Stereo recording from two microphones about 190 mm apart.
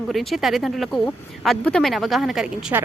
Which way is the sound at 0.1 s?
Centre (ahead or behind).